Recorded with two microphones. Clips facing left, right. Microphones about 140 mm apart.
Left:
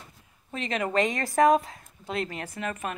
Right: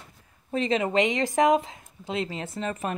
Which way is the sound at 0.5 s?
25° right (ahead or behind).